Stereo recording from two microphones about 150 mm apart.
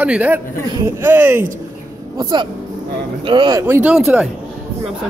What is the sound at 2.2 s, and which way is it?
Speech, 30° right (ahead or behind).